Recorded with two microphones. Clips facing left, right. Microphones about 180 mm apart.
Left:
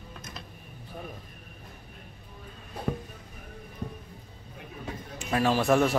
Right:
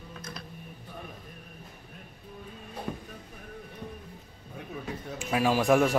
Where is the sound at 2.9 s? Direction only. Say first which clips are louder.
Left 6 dB; 65° left (ahead or behind).